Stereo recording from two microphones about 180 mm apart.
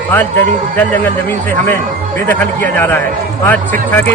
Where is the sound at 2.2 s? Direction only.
10° left (ahead or behind).